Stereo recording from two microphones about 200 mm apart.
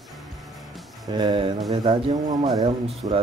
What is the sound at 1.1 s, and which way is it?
Speech, 20° right (ahead or behind).